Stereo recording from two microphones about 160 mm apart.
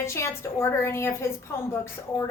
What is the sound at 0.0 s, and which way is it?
A woman's voice, 15° left (ahead or behind).